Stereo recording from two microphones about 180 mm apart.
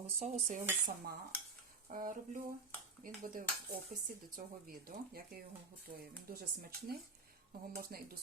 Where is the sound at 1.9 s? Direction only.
50° right (ahead or behind).